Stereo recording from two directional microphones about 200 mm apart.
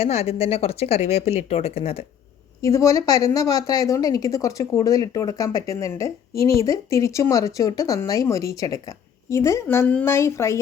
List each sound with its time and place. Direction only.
0.0 s speech: 30° left (ahead or behind)
2.6 s a woman's voice: 15° left (ahead or behind)